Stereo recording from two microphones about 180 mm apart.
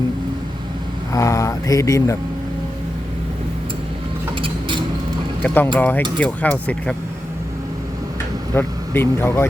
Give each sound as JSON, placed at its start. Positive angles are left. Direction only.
{"t": 1.1, "sound": "speech", "side_deg": 20}
{"t": 4.4, "sound": "a sound", "side_deg": -30}
{"t": 5.4, "sound": "speech", "side_deg": 5}
{"t": 8.5, "sound": "speech", "side_deg": 10}